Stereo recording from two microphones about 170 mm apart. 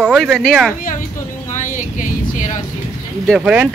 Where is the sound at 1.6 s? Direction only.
50° left (ahead or behind).